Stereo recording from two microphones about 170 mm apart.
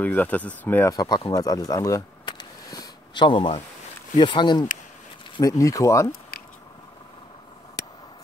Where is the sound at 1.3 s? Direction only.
20° left (ahead or behind).